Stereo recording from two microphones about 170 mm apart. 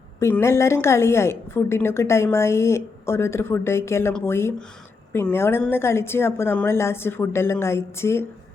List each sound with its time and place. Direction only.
0.2 s a woman's voice: 15° left (ahead or behind)